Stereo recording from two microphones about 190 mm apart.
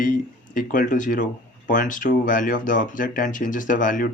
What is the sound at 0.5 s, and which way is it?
Speech, 45° left (ahead or behind).